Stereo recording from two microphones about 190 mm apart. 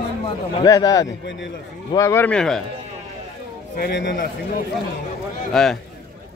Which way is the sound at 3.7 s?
60° left (ahead or behind).